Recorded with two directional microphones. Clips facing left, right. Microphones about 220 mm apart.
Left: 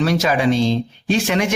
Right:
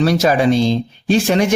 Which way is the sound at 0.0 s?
35° right (ahead or behind).